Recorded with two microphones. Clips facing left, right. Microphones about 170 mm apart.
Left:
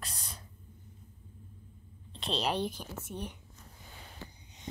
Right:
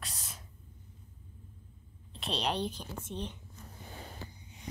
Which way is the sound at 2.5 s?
10° left (ahead or behind).